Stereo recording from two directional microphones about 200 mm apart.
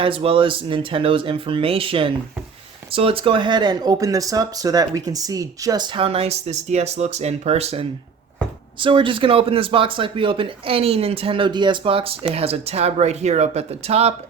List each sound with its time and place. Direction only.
0.0 s speech: 25° right (ahead or behind)